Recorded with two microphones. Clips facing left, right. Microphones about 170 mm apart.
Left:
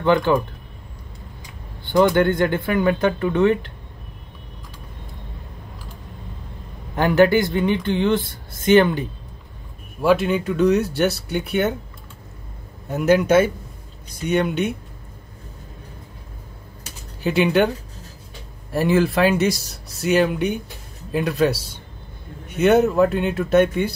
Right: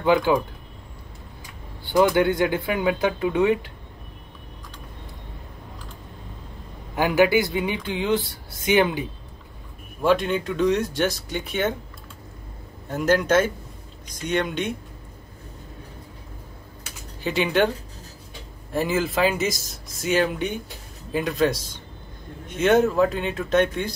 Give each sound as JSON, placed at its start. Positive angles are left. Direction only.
{"t": 0.0, "sound": "speech", "side_deg": -10}
{"t": 2.1, "sound": "speech", "side_deg": -10}
{"t": 7.0, "sound": "speech", "side_deg": -10}
{"t": 10.0, "sound": "speech", "side_deg": 0}
{"t": 12.9, "sound": "a man's voice", "side_deg": 5}
{"t": 17.4, "sound": "speech", "side_deg": 0}
{"t": 18.7, "sound": "speech", "side_deg": 0}
{"t": 21.5, "sound": "a man's voice", "side_deg": 65}
{"t": 22.7, "sound": "speech", "side_deg": 0}